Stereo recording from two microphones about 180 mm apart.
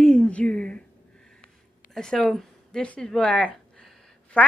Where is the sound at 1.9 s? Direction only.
5° left (ahead or behind).